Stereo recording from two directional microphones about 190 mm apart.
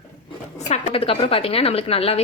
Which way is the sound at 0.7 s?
35° left (ahead or behind).